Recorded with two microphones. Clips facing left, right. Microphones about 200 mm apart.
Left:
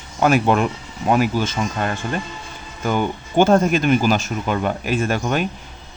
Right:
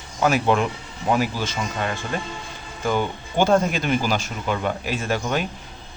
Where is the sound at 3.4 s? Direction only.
50° left (ahead or behind).